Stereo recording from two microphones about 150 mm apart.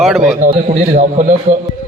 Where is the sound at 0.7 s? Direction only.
55° right (ahead or behind).